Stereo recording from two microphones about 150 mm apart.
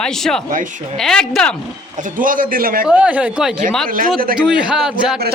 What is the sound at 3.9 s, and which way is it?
Speech, 70° right (ahead or behind).